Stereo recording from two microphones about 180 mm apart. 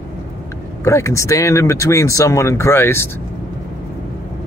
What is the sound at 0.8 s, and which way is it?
Speech, 15° left (ahead or behind).